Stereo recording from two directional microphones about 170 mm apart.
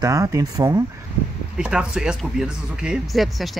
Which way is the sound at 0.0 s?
20° right (ahead or behind).